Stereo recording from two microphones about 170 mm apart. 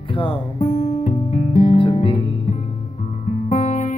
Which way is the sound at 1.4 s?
40° left (ahead or behind).